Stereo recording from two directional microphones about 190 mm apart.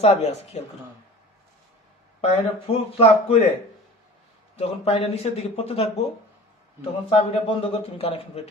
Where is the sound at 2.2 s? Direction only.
30° left (ahead or behind).